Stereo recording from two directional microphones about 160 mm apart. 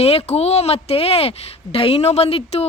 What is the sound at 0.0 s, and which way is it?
Speech, 40° left (ahead or behind).